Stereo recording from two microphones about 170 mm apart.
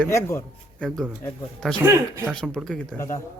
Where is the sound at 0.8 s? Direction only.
5° left (ahead or behind).